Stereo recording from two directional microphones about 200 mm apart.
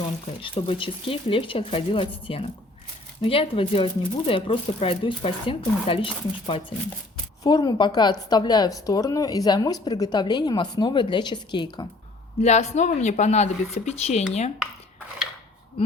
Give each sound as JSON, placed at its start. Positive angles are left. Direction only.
{"t": 0.4, "sound": "speech", "side_deg": 25}
{"t": 12.4, "sound": "a woman's voice", "side_deg": 35}